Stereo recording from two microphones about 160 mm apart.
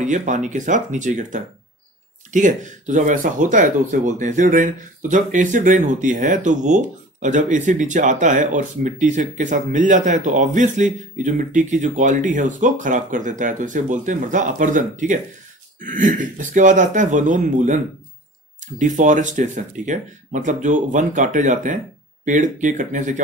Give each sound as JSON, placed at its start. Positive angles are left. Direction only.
{"t": 0.0, "sound": "speech", "side_deg": -50}
{"t": 18.8, "sound": "speech", "side_deg": -50}